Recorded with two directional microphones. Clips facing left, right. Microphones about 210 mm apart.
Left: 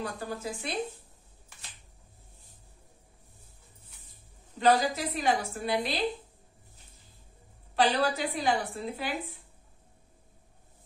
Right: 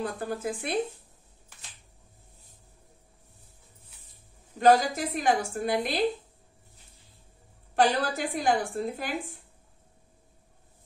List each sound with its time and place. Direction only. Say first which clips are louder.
0.0 s a woman's voice: right 4 dB; 55° right (ahead or behind)
4.6 s a woman's voice: right 3 dB; 45° right (ahead or behind)
7.7 s a woman's voice: right 1 dB; 50° right (ahead or behind)